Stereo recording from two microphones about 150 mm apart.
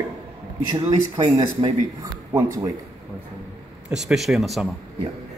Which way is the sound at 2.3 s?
20° right (ahead or behind).